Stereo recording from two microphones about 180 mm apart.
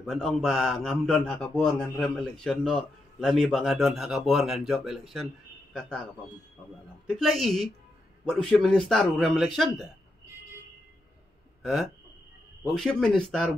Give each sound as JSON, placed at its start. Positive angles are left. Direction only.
{"t": 0.0, "sound": "a man's voice", "side_deg": 0}
{"t": 7.1, "sound": "a man's voice", "side_deg": 0}
{"t": 11.6, "sound": "a man's voice", "side_deg": 0}